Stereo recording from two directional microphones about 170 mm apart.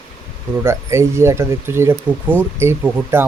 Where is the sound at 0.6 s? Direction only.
15° right (ahead or behind).